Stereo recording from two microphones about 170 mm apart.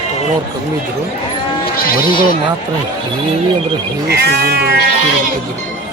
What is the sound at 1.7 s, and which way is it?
Speech, 60° left (ahead or behind).